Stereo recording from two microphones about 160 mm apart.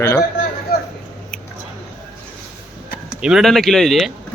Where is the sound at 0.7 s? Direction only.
75° left (ahead or behind).